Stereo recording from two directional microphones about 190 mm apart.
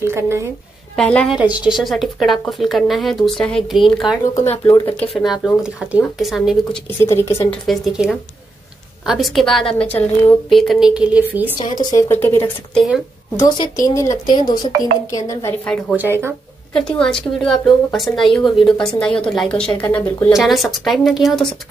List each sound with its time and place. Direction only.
0.0 s speech: 15° right (ahead or behind)
0.9 s speech: 5° left (ahead or behind)
4.6 s speech: 10° left (ahead or behind)
5.1 s speech: centre (ahead or behind)
7.0 s speech: 15° left (ahead or behind)
7.6 s speech: centre (ahead or behind)
11.8 s speech: 15° left (ahead or behind)
15.6 s speech: 5° left (ahead or behind)
16.0 s speech: 10° right (ahead or behind)
16.7 s speech: 5° left (ahead or behind)